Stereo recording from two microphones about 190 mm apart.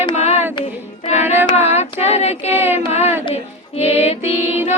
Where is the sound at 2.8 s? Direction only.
35° left (ahead or behind).